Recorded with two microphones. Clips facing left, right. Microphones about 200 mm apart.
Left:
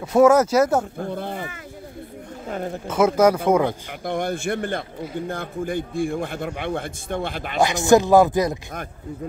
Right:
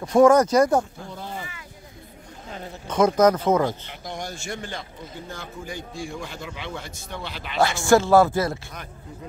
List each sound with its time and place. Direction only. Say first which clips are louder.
0.0 s speech: left 1 dB; 5° left (ahead or behind)
0.9 s a man's voice: left 7 dB; 55° left (ahead or behind)
2.9 s speech: left 1 dB; 5° left (ahead or behind)
4.0 s a man's voice: left 11 dB; 55° left (ahead or behind)
7.6 s speech: left 2 dB; 20° left (ahead or behind)